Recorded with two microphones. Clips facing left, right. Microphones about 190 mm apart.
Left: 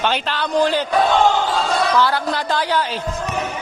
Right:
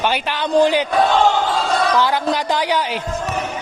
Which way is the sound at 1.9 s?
15° right (ahead or behind).